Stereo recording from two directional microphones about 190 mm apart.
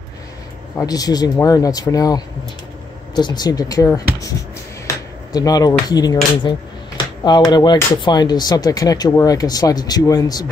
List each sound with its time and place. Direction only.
0.7 s speech: 20° left (ahead or behind)